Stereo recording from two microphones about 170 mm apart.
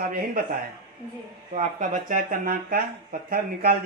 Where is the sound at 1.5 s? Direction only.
50° right (ahead or behind).